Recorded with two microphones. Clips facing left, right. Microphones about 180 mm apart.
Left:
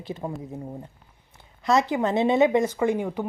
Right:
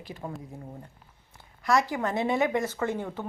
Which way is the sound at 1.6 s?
20° left (ahead or behind).